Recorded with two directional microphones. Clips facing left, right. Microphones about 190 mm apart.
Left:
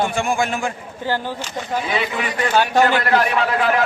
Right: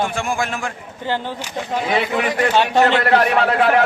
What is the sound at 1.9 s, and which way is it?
Speech, 55° right (ahead or behind).